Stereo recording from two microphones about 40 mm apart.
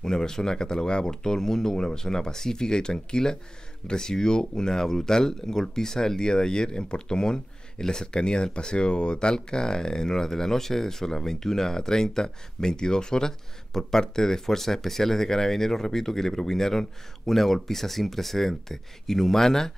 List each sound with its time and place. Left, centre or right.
0.0 s speech: centre